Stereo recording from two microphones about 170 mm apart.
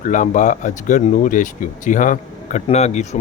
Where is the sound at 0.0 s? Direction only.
50° left (ahead or behind).